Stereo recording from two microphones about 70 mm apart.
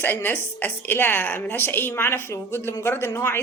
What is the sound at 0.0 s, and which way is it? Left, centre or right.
A woman's voice, left.